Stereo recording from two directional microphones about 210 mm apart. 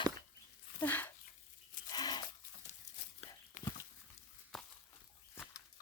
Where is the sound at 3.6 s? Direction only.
35° left (ahead or behind).